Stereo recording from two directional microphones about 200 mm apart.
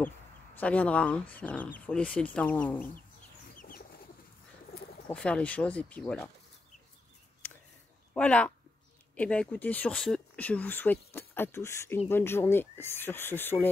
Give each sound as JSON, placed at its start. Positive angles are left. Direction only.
{"t": 0.6, "sound": "speech", "side_deg": 5}
{"t": 3.5, "sound": "chicken", "side_deg": 45}
{"t": 5.0, "sound": "speech", "side_deg": 5}
{"t": 7.4, "sound": "a sound", "side_deg": 5}
{"t": 8.1, "sound": "speech", "side_deg": 5}